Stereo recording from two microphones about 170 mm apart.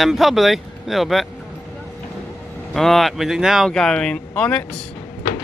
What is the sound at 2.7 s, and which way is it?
Speech, centre (ahead or behind).